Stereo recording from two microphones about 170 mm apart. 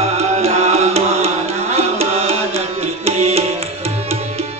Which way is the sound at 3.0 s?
35° right (ahead or behind).